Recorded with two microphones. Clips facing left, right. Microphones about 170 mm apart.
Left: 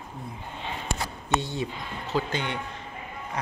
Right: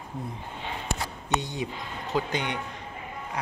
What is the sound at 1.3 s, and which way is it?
Speech, 15° right (ahead or behind).